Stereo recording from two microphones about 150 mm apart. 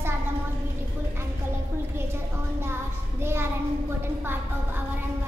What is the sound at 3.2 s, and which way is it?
A woman's voice, 15° right (ahead or behind).